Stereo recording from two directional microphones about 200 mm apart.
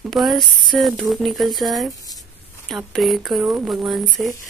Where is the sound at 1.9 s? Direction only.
15° left (ahead or behind).